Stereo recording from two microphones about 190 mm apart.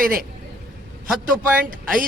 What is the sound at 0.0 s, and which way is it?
Speech, 50° right (ahead or behind).